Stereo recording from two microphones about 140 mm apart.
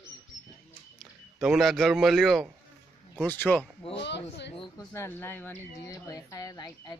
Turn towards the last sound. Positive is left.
turn(degrees=30)  # may be behind; listen again after turning